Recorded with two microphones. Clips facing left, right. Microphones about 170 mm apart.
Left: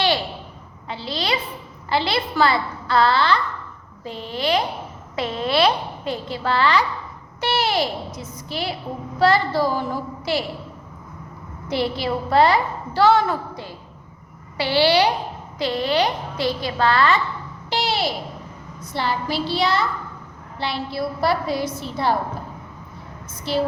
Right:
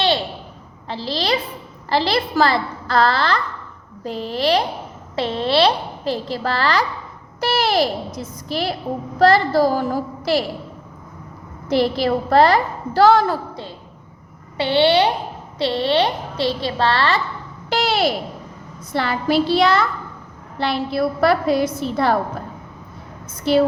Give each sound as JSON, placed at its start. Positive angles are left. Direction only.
{"t": 0.9, "sound": "a woman's voice", "side_deg": -35}
{"t": 11.7, "sound": "a woman's voice", "side_deg": -40}
{"t": 17.7, "sound": "a sound", "side_deg": -55}
{"t": 18.9, "sound": "a woman's voice", "side_deg": -60}